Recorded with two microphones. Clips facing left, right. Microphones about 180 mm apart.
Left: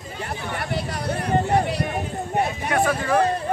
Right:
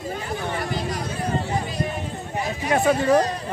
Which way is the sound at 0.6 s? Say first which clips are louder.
Right 1 dB; 65° left (ahead or behind).